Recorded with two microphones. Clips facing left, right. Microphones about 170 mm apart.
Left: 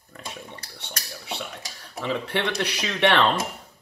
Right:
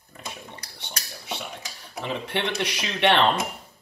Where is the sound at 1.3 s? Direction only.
55° left (ahead or behind).